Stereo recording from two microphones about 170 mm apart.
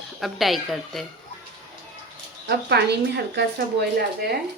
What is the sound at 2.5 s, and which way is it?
Speech, 75° right (ahead or behind).